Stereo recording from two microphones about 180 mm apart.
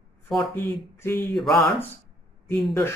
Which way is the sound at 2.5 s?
Centre (ahead or behind).